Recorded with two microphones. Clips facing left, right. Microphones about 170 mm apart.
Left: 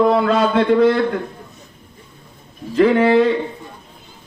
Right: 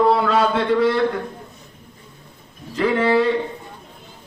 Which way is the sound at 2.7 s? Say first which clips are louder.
Left 5 dB; 55° left (ahead or behind).